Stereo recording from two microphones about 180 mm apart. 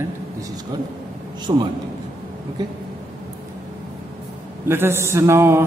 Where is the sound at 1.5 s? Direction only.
25° right (ahead or behind).